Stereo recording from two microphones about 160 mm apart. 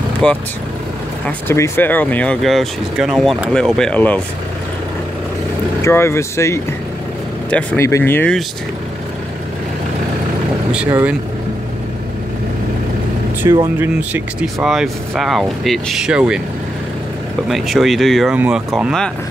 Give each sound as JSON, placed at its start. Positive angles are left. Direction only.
{"t": 0.2, "sound": "speech", "side_deg": 5}
{"t": 5.8, "sound": "speech", "side_deg": 15}
{"t": 13.4, "sound": "speech", "side_deg": -15}
{"t": 17.5, "sound": "speech", "side_deg": 0}